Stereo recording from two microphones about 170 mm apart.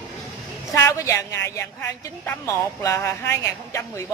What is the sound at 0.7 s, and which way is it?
Speech, 15° left (ahead or behind).